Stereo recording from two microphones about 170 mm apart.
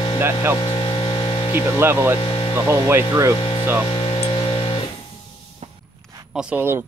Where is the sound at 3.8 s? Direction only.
30° left (ahead or behind).